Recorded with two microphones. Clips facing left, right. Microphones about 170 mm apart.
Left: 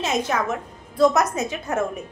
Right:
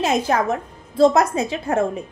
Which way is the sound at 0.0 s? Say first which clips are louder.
Right 4 dB; 35° right (ahead or behind).